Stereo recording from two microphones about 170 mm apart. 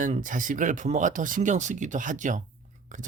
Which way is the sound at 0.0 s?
50° right (ahead or behind).